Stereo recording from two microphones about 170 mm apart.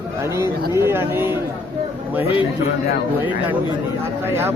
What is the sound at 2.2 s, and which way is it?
Speech, 35° left (ahead or behind).